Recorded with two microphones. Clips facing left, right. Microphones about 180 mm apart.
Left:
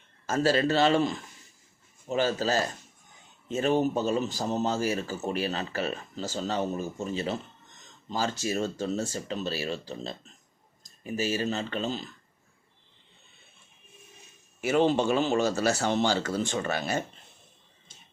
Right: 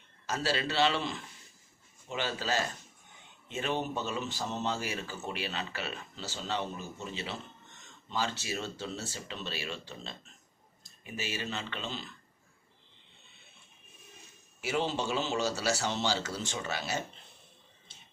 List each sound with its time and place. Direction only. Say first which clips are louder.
0.3 s a man's voice: left 8 dB; 45° left (ahead or behind)
14.6 s speech: left 8 dB; 55° left (ahead or behind)